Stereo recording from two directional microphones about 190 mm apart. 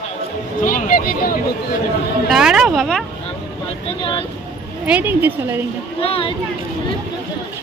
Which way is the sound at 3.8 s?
30° left (ahead or behind).